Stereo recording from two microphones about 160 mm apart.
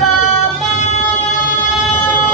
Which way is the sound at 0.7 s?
45° left (ahead or behind).